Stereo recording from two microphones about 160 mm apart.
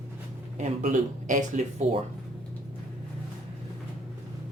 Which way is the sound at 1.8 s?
40° right (ahead or behind).